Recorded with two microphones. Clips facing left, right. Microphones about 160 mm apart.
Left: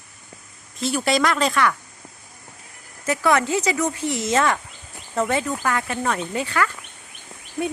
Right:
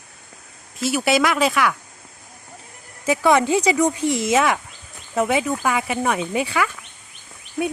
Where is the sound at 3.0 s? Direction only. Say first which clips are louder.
Right 3 dB; 15° right (ahead or behind).